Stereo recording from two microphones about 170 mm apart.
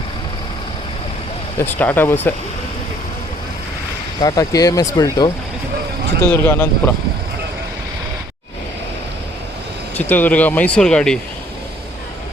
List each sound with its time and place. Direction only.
1.5 s speech: 10° left (ahead or behind)
4.2 s speech: 20° left (ahead or behind)
6.2 s speech: 10° left (ahead or behind)
10.0 s speech: 10° left (ahead or behind)